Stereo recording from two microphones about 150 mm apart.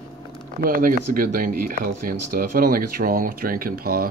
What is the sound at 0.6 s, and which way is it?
Speech, 75° right (ahead or behind).